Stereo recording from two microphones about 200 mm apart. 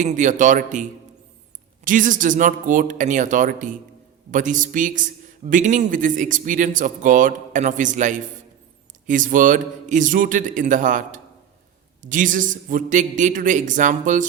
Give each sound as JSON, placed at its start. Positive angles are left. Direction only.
{"t": 0.0, "sound": "a man's voice", "side_deg": -40}